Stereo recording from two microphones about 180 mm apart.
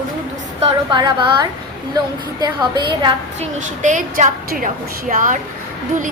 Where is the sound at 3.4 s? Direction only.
45° right (ahead or behind).